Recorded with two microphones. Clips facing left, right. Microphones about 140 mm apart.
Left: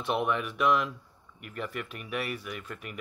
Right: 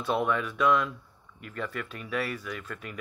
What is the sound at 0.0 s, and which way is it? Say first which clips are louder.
Speech: right 1 dB; 30° left (ahead or behind).